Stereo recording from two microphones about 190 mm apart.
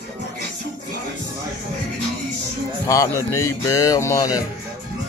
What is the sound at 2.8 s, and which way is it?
Speech, 15° left (ahead or behind).